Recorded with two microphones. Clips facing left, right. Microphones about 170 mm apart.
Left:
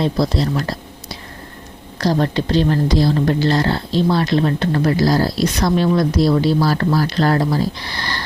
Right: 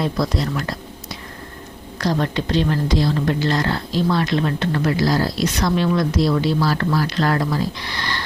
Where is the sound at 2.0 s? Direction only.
35° left (ahead or behind).